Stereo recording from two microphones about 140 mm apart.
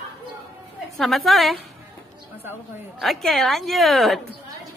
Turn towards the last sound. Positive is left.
turn(degrees=0)  # may be behind; listen again after turning